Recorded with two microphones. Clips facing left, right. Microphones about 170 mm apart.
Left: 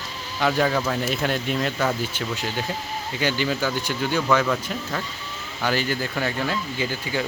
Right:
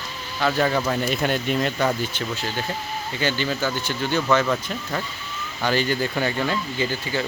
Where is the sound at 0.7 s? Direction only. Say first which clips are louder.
Right 1 dB; 5° right (ahead or behind).